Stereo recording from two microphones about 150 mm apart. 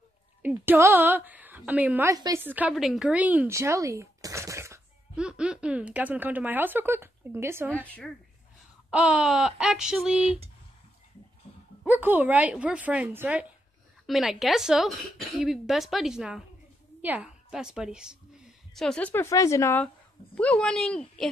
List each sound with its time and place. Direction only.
0.4 s a woman's voice: 10° right (ahead or behind)
2.0 s a woman's voice: 20° right (ahead or behind)
2.4 s speech: 10° right (ahead or behind)
5.1 s speech: 5° right (ahead or behind)
8.9 s speech: 5° right (ahead or behind)
11.8 s speech: 10° right (ahead or behind)
14.0 s a woman's voice: centre (ahead or behind)
18.8 s speech: 5° left (ahead or behind)